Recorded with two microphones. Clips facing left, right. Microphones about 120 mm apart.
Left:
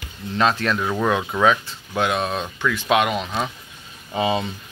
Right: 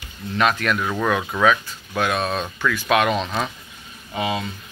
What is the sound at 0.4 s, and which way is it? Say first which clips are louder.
Speech: even; 25° left (ahead or behind).